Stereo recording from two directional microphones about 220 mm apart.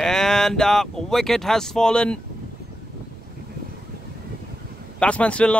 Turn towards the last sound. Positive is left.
turn(degrees=5)  # may be behind; listen again after turning